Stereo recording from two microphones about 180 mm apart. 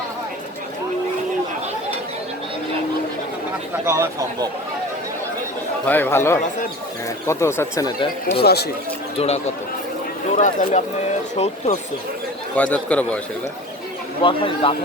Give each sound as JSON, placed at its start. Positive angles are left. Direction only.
{"t": 3.8, "sound": "speech", "side_deg": -15}
{"t": 5.8, "sound": "speech", "side_deg": 10}
{"t": 8.4, "sound": "speech", "side_deg": 65}
{"t": 10.3, "sound": "speech", "side_deg": 45}
{"t": 12.5, "sound": "speech", "side_deg": 10}
{"t": 14.2, "sound": "speech", "side_deg": 25}